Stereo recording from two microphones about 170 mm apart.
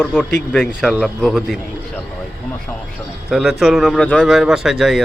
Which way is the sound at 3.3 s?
Centre (ahead or behind).